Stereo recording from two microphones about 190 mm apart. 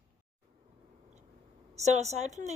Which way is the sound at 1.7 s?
35° right (ahead or behind).